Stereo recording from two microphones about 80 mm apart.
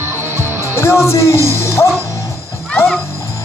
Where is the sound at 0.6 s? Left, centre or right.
Left.